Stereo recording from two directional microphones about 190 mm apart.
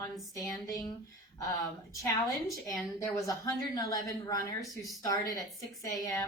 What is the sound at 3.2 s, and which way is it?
A woman's voice, 20° left (ahead or behind).